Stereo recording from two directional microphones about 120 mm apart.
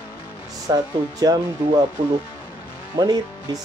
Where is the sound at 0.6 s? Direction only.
30° right (ahead or behind).